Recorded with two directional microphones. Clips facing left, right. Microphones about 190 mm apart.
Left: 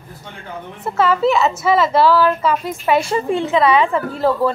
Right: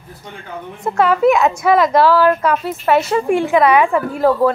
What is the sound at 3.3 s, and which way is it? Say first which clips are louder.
A woman's voice: right 2 dB; 15° right (ahead or behind).